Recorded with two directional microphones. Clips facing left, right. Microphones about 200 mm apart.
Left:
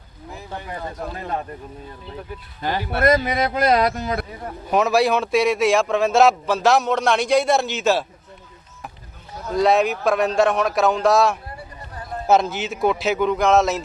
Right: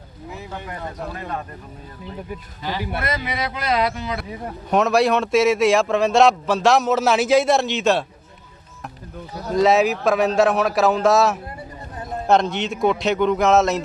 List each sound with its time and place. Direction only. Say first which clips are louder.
2.6 s a man's voice: left 5 dB; 50° left (ahead or behind)
4.7 s a man's voice: right 1 dB; centre (ahead or behind)
9.6 s a man's voice: right 1 dB; centre (ahead or behind)